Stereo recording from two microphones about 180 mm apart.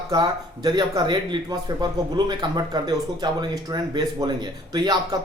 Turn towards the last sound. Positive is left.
turn(degrees=-25)  # may be behind; listen again after turning